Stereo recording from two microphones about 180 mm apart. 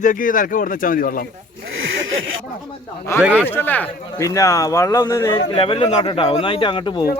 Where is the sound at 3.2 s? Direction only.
5° right (ahead or behind).